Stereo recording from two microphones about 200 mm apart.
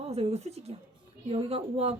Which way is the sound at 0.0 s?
30° right (ahead or behind).